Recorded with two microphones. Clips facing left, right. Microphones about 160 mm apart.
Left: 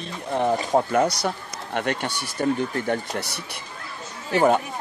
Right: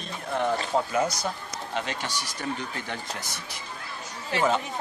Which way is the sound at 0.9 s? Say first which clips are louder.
Left 5 dB; 65° left (ahead or behind).